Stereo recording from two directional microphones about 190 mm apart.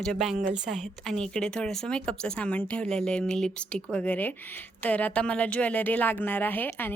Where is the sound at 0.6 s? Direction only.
Centre (ahead or behind).